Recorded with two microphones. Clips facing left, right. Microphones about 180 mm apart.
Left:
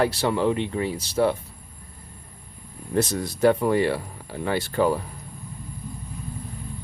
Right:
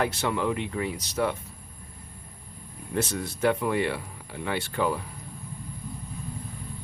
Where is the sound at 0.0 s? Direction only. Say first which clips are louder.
Left 5 dB; 35° left (ahead or behind).